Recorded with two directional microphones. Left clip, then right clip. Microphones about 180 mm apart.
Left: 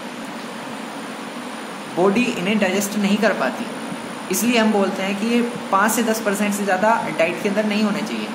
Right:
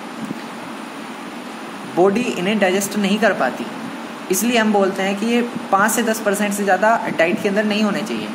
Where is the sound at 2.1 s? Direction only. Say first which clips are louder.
Even; 30° right (ahead or behind).